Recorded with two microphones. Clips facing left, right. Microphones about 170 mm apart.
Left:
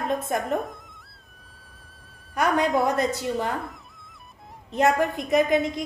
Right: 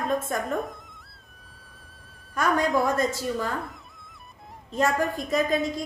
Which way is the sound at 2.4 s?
65° left (ahead or behind).